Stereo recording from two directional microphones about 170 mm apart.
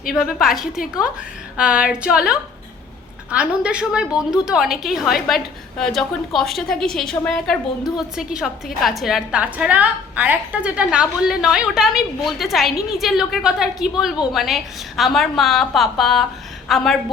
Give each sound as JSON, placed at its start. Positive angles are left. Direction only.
{"t": 0.1, "sound": "a woman's voice", "side_deg": 0}